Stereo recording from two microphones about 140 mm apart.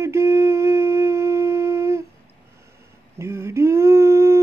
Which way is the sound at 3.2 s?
20° right (ahead or behind).